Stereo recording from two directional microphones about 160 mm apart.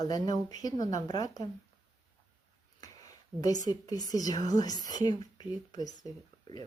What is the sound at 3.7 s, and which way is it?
Speech, 25° left (ahead or behind).